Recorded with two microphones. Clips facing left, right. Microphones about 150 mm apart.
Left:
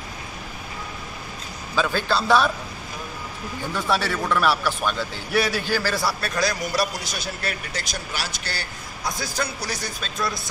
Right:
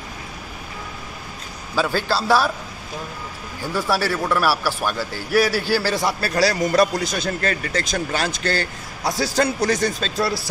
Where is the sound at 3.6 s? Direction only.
5° right (ahead or behind).